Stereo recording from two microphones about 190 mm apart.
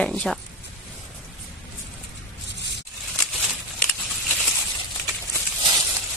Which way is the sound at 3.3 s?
Centre (ahead or behind).